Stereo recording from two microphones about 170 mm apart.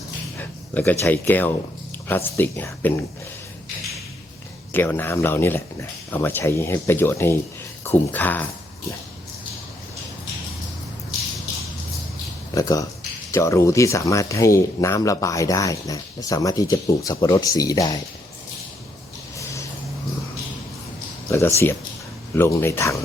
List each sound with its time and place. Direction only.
0.3 s speech: 10° left (ahead or behind)
4.7 s speech: 10° left (ahead or behind)
12.5 s speech: 20° left (ahead or behind)
21.2 s speech: 15° left (ahead or behind)